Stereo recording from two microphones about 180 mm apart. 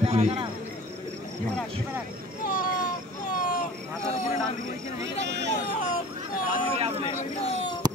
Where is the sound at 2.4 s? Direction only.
50° left (ahead or behind).